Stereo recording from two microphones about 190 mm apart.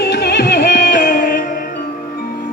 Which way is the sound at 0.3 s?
60° left (ahead or behind).